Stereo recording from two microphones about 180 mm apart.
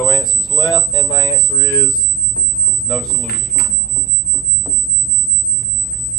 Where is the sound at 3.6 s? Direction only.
60° left (ahead or behind).